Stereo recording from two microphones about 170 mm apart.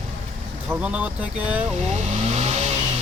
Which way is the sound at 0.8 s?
5° right (ahead or behind).